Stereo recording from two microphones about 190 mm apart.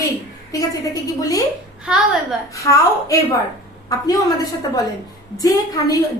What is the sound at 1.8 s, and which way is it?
Speech, 5° right (ahead or behind).